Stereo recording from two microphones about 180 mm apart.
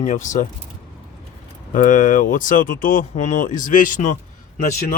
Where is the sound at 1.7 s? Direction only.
45° left (ahead or behind).